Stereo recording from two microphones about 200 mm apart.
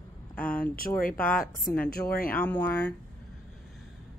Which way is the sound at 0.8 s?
15° left (ahead or behind).